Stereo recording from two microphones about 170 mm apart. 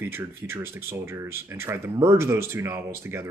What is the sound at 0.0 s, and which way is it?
Speech, 15° right (ahead or behind).